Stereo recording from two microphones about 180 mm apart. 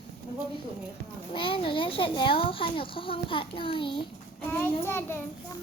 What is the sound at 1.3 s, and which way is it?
A child's voice, 30° left (ahead or behind).